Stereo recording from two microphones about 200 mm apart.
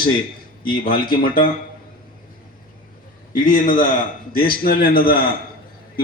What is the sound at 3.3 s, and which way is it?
A man's voice, 40° left (ahead or behind).